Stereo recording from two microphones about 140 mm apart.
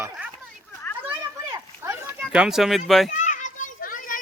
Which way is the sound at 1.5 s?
25° right (ahead or behind).